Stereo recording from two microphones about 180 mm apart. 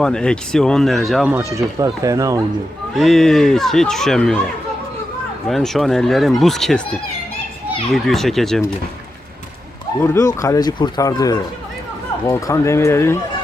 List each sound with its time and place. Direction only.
0.0 s speech: 5° left (ahead or behind)
1.3 s speech: 15° right (ahead or behind)
2.9 s speech: centre (ahead or behind)
5.5 s speech: centre (ahead or behind)
7.9 s speech: centre (ahead or behind)
10.0 s speech: 15° left (ahead or behind)